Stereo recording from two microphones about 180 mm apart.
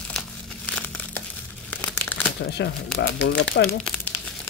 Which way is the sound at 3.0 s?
90° left.